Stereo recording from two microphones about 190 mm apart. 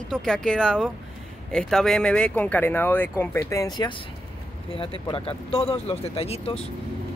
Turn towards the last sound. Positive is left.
turn(degrees=30)  # may be behind; listen again after turning